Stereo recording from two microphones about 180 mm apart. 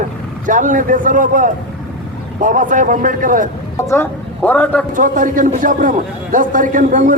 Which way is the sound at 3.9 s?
10° left (ahead or behind).